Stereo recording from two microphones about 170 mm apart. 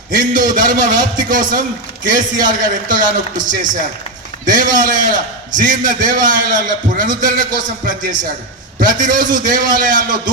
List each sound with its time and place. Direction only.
0.1 s a man's voice: 50° right (ahead or behind)